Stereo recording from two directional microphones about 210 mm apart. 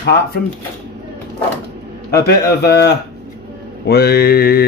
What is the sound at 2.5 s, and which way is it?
Speech, 50° left (ahead or behind).